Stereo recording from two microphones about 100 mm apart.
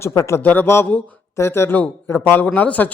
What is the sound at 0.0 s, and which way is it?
A man's voice, 25° left (ahead or behind).